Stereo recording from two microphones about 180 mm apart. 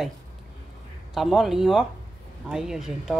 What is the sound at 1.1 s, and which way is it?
A woman's voice, centre (ahead or behind).